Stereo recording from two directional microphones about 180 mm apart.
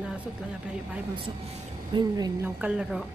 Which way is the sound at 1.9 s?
25° right (ahead or behind).